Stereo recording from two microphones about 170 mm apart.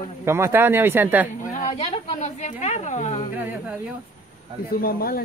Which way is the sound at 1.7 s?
35° left (ahead or behind).